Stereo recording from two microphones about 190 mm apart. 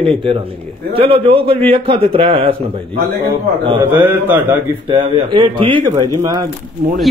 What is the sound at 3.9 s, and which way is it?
Speech, 10° right (ahead or behind).